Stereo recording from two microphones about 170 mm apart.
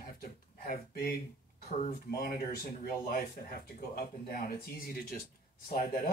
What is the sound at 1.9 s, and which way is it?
Speech, 60° left (ahead or behind).